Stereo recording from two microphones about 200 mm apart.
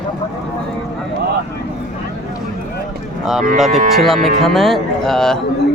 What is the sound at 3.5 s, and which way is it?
Speech, centre (ahead or behind).